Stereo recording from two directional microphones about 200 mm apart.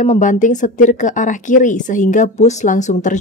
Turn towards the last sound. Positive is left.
turn(degrees=35)  # may be behind; listen again after turning